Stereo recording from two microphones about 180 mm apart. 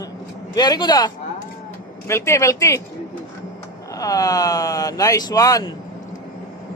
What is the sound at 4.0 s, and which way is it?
Speech, 20° left (ahead or behind).